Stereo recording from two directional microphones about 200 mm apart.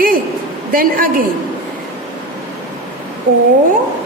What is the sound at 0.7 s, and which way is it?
Speech, 45° right (ahead or behind).